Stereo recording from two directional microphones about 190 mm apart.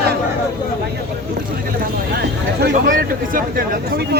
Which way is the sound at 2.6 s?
45° right (ahead or behind).